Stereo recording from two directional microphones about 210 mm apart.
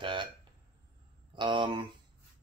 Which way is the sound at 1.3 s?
25° right (ahead or behind).